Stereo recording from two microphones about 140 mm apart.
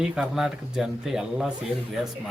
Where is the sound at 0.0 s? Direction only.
5° right (ahead or behind).